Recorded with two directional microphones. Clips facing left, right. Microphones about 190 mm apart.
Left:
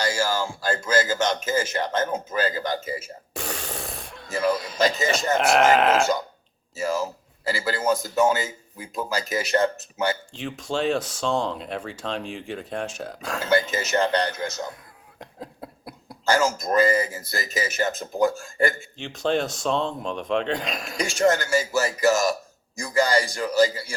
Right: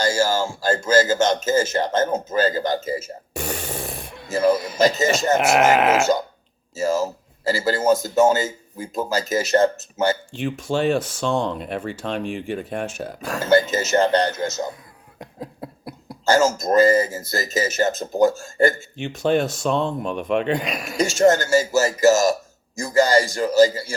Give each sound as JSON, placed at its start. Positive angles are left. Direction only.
{"t": 0.0, "sound": "a sound", "side_deg": -45}
{"t": 0.7, "sound": "a man's voice", "side_deg": -45}
{"t": 3.3, "sound": "fart", "side_deg": 0}
{"t": 3.9, "sound": "a sound", "side_deg": -15}
{"t": 4.4, "sound": "a man's voice", "side_deg": -45}
{"t": 5.4, "sound": "speech", "side_deg": -5}
{"t": 6.7, "sound": "a man's voice", "side_deg": -45}
{"t": 10.4, "sound": "speech", "side_deg": 0}
{"t": 13.4, "sound": "a man's voice", "side_deg": -45}
{"t": 15.2, "sound": "a sound", "side_deg": 0}
{"t": 16.2, "sound": "a man's voice", "side_deg": -45}
{"t": 19.0, "sound": "speech", "side_deg": -5}
{"t": 21.0, "sound": "a man's voice", "side_deg": -45}